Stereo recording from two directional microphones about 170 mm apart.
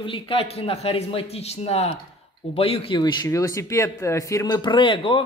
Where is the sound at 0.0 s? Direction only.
30° left (ahead or behind).